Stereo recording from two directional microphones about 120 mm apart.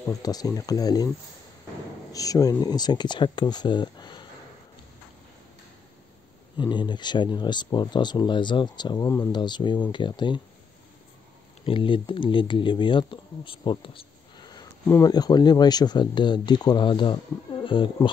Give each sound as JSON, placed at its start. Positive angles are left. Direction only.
{"t": 0.0, "sound": "speech", "side_deg": 30}
{"t": 2.1, "sound": "speech", "side_deg": 30}
{"t": 6.5, "sound": "speech", "side_deg": 40}
{"t": 11.6, "sound": "speech", "side_deg": 45}